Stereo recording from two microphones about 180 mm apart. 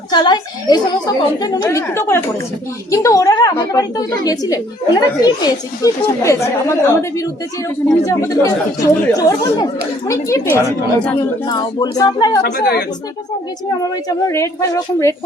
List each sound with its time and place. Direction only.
0.1 s a woman's voice: 25° left (ahead or behind)
12.4 s a woman's voice: 60° left (ahead or behind)
14.3 s speech: 15° left (ahead or behind)